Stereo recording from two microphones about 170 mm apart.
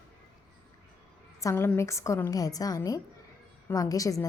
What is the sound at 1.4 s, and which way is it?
A woman's voice, 15° left (ahead or behind).